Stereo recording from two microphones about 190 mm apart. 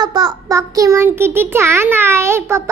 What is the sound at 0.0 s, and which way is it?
A child's voice, 20° right (ahead or behind).